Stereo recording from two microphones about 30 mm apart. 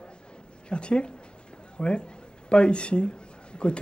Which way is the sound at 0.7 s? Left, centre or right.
Left.